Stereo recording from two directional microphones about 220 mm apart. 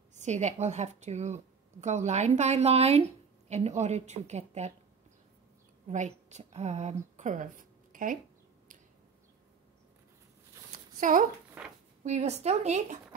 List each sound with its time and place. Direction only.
0.1 s a woman's voice: 30° right (ahead or behind)
5.9 s a woman's voice: 30° right (ahead or behind)
11.0 s speech: 35° right (ahead or behind)
11.6 s a sound: 5° right (ahead or behind)
12.0 s a woman's voice: 30° right (ahead or behind)